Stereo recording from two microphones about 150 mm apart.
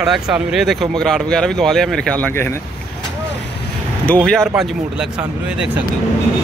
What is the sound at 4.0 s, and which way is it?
Speech, 10° left (ahead or behind).